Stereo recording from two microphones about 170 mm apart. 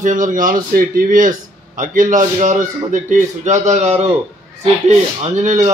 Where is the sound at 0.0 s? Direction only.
50° right (ahead or behind).